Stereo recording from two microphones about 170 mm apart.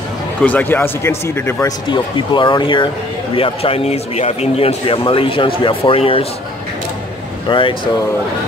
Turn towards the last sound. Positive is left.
turn(degrees=30)  # may be behind; listen again after turning